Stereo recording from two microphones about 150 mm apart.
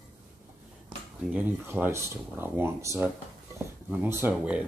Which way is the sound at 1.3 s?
10° right (ahead or behind).